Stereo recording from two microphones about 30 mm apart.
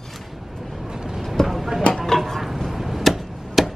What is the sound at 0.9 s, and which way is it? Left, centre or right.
Vehicle, right.